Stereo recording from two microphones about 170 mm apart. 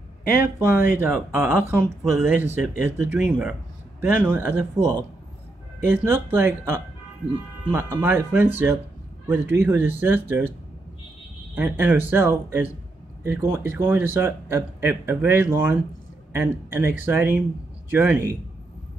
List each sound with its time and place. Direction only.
0.6 s speech: 10° right (ahead or behind)
11.5 s speech: 10° right (ahead or behind)